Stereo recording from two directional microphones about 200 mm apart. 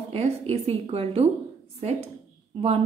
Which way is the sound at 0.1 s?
30° right (ahead or behind).